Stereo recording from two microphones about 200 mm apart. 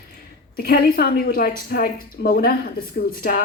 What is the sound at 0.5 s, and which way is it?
A woman's voice, 45° left (ahead or behind).